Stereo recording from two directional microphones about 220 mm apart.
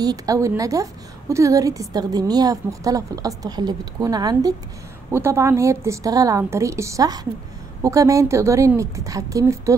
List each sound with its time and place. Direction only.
0.0 s a woman's voice: 15° right (ahead or behind)